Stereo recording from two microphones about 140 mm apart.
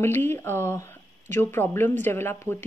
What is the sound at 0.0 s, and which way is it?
Speech, 15° left (ahead or behind).